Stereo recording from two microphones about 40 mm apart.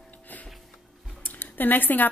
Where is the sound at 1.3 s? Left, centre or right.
Left.